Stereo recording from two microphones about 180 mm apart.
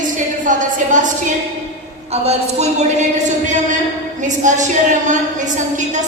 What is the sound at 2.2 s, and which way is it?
A woman's voice, 40° right (ahead or behind).